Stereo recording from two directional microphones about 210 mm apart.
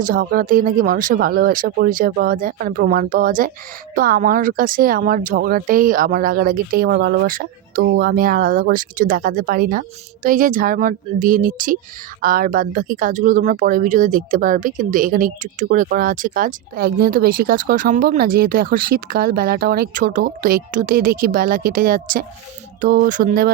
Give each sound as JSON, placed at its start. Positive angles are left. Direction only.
{"t": 0.0, "sound": "speech", "side_deg": -45}